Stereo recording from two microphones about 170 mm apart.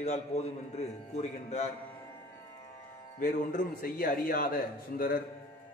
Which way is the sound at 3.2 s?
50° left (ahead or behind).